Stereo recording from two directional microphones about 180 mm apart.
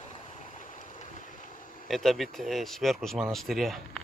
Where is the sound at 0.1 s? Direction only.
40° left (ahead or behind).